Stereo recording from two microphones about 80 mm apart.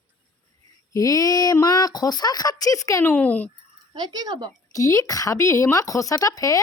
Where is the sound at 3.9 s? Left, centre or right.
Right.